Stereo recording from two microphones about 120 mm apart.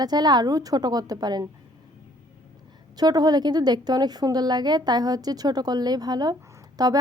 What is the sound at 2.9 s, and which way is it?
Speech, 35° right (ahead or behind).